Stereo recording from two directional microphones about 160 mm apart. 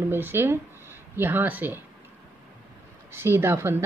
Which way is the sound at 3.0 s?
15° right (ahead or behind).